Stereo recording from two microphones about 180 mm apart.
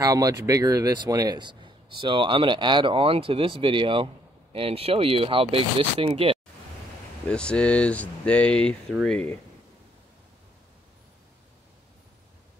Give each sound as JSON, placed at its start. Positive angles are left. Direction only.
{"t": 0.0, "sound": "speech", "side_deg": -20}
{"t": 7.2, "sound": "speech", "side_deg": 5}